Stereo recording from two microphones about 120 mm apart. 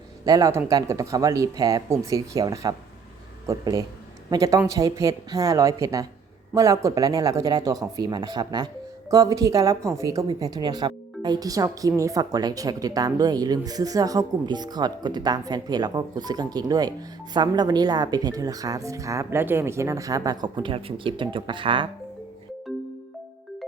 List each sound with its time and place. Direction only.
0.3 s speech: 30° right (ahead or behind); by 21.8 s 45° right (ahead or behind)